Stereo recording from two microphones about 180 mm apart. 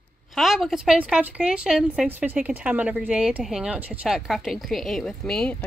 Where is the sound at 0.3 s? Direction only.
Centre (ahead or behind).